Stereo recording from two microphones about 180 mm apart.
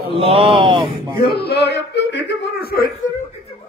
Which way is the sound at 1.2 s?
65° left (ahead or behind).